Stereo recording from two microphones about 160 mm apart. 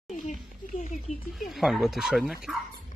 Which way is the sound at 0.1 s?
50° left (ahead or behind).